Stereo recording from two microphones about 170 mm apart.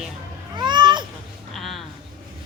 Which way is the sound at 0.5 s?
25° right (ahead or behind).